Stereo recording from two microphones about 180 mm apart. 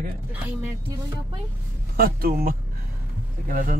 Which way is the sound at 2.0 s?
55° right (ahead or behind).